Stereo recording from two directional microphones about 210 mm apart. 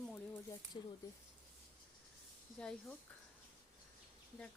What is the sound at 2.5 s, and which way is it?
Speech, 5° left (ahead or behind).